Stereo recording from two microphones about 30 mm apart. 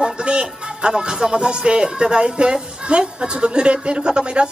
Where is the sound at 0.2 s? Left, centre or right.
Right.